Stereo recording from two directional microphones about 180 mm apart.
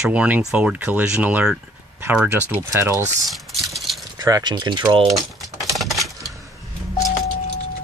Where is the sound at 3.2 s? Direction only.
Centre (ahead or behind).